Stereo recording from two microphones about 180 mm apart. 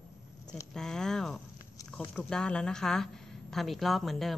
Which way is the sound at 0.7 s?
5° left (ahead or behind).